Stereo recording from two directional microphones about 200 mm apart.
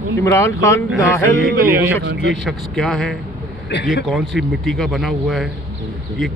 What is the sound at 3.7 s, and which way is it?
Speech, 60° left (ahead or behind).